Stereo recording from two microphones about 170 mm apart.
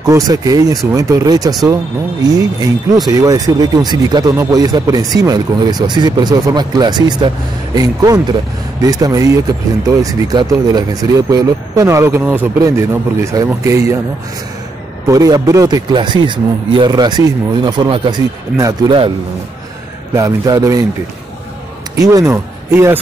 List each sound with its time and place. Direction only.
0.1 s speech: 20° right (ahead or behind)
15.0 s speech: 20° right (ahead or behind)
20.2 s speech: 20° right (ahead or behind)
21.9 s speech: 20° right (ahead or behind)